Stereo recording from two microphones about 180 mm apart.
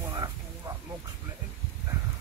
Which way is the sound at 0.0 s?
20° right (ahead or behind).